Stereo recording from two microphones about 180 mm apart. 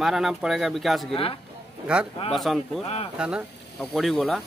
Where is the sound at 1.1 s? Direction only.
30° left (ahead or behind).